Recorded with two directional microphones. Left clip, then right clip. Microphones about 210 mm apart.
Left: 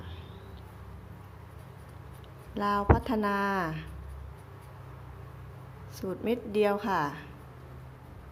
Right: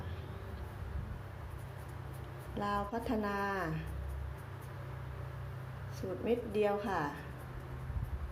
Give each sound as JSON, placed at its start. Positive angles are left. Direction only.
{"t": 2.6, "sound": "speech", "side_deg": 30}
{"t": 6.0, "sound": "a woman's voice", "side_deg": 35}